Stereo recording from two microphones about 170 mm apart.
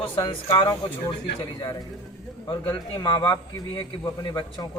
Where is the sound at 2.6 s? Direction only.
25° left (ahead or behind).